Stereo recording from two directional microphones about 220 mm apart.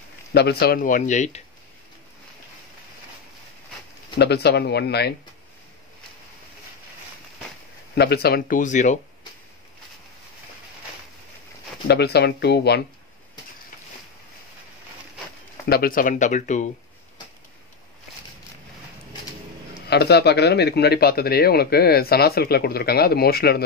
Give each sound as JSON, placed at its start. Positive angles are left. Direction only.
{"t": 0.3, "sound": "speech", "side_deg": 45}
{"t": 4.2, "sound": "a man's voice", "side_deg": 50}
{"t": 7.9, "sound": "speech", "side_deg": 45}
{"t": 11.9, "sound": "a man's voice", "side_deg": 50}
{"t": 15.6, "sound": "speech", "side_deg": 45}
{"t": 19.9, "sound": "a man's voice", "side_deg": 45}